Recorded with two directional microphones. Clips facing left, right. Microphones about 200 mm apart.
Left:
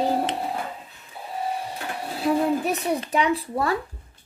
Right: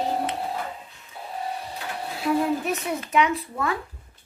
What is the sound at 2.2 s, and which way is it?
A child's voice, 35° left (ahead or behind).